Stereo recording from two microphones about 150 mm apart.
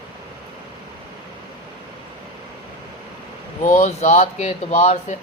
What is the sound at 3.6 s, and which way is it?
Speech, 55° left (ahead or behind).